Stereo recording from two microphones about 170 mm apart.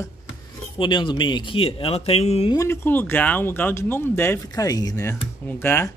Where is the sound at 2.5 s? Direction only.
15° left (ahead or behind).